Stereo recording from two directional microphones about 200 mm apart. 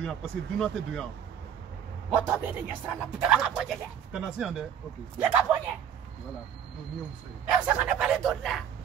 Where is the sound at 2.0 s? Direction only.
5° right (ahead or behind).